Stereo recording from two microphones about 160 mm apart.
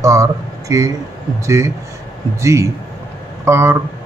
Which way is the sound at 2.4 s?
20° right (ahead or behind).